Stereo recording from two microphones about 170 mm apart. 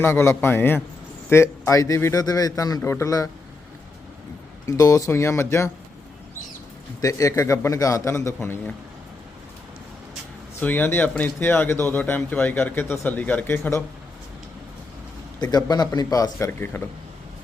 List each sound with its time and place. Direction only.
0.0 s a man's voice: 15° left (ahead or behind)
4.6 s speech: 20° left (ahead or behind)
7.0 s a man's voice: 20° left (ahead or behind)
10.6 s speech: 10° left (ahead or behind)
15.4 s a man's voice: 25° left (ahead or behind)